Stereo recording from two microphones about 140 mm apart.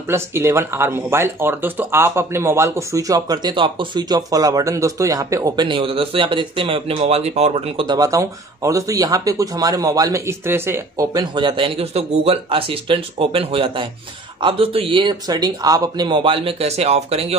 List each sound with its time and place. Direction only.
0.1 s speech: 20° right (ahead or behind)
5.7 s speech: 35° right (ahead or behind)